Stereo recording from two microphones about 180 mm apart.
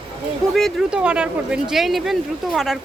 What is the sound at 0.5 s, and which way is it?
Speech, centre (ahead or behind).